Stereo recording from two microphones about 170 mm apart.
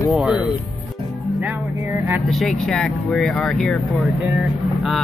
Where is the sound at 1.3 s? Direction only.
10° right (ahead or behind).